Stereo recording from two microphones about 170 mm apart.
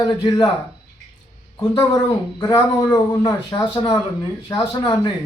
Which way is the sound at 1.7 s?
15° left (ahead or behind).